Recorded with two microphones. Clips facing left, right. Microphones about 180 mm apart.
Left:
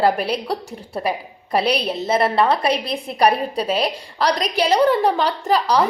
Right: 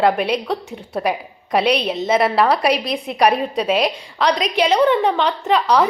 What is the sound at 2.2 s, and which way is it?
Speech, centre (ahead or behind).